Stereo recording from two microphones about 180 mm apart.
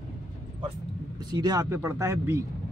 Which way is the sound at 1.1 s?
25° right (ahead or behind).